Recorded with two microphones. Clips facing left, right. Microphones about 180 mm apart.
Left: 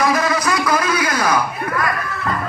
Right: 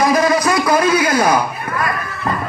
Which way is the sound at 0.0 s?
25° right (ahead or behind).